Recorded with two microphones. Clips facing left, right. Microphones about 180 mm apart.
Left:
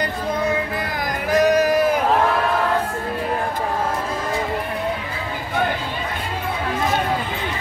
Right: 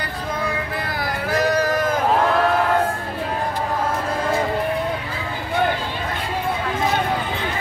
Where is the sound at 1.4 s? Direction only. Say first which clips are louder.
Left 4 dB; 15° left (ahead or behind).